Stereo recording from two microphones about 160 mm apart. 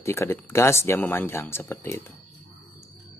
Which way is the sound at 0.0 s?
15° left (ahead or behind).